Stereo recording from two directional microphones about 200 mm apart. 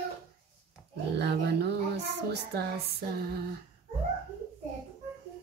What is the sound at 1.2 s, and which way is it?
A woman's voice, 55° right (ahead or behind).